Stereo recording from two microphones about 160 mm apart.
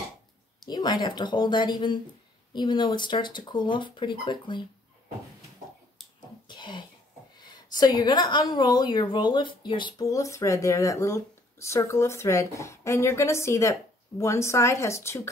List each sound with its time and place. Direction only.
0.7 s a woman's voice: 25° left (ahead or behind)
6.4 s cough: 30° left (ahead or behind)
7.3 s a woman's voice: 25° left (ahead or behind)